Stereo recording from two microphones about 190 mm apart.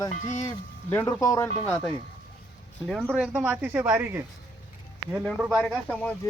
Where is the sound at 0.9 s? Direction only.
10° left (ahead or behind).